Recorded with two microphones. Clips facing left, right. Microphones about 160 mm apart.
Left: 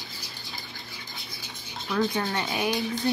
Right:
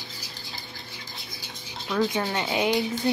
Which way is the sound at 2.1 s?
20° right (ahead or behind).